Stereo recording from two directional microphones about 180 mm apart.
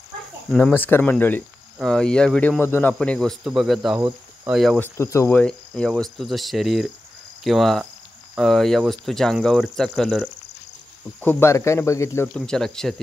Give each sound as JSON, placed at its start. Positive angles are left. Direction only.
{"t": 0.6, "sound": "speech", "side_deg": 10}
{"t": 4.9, "sound": "speech", "side_deg": 15}
{"t": 5.4, "sound": "speech", "side_deg": 5}
{"t": 12.4, "sound": "speech", "side_deg": 5}